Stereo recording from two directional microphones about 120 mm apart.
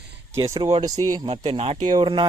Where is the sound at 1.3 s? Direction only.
60° right (ahead or behind).